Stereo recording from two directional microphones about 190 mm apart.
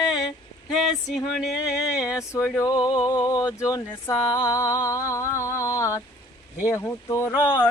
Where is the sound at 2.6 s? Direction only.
20° left (ahead or behind).